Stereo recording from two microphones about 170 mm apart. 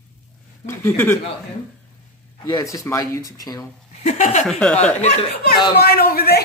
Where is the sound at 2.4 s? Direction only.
20° left (ahead or behind).